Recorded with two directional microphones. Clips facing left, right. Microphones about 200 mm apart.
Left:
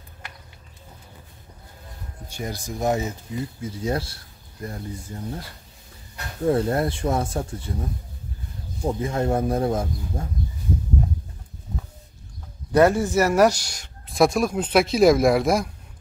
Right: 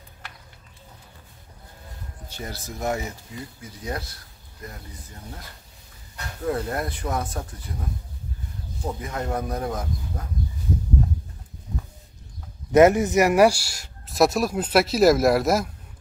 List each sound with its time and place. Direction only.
2.2 s speech: 15° left (ahead or behind); by 5.4 s 30° left (ahead or behind)
6.4 s speech: 30° left (ahead or behind)
8.8 s speech: 25° left (ahead or behind)
12.7 s speech: 20° right (ahead or behind); by 15.7 s 5° right (ahead or behind)